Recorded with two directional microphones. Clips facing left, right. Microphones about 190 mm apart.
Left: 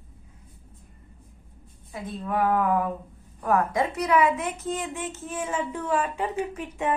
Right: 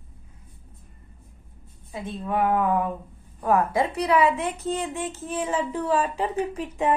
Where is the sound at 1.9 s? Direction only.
25° right (ahead or behind).